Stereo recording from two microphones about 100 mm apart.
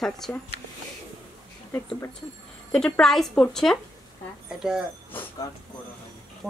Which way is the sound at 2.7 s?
10° left (ahead or behind).